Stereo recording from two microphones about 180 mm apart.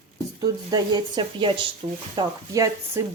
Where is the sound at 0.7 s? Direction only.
25° right (ahead or behind).